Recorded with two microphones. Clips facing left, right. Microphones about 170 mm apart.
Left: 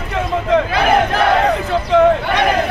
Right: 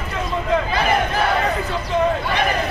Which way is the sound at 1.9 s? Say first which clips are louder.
Left 7 dB; 85° left.